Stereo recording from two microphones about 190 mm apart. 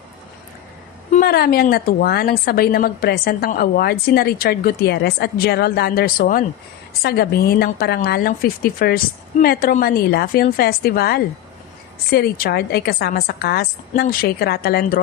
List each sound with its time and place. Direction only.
1.1 s a woman's voice: 50° left (ahead or behind)